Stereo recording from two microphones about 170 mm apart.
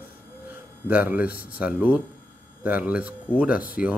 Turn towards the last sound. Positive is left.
turn(degrees=55)  # may be behind; listen again after turning